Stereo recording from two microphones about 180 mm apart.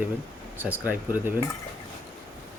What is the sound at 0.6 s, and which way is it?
Speech, 10° right (ahead or behind).